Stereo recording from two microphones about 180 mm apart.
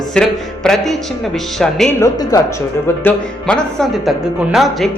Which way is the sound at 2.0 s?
20° left (ahead or behind).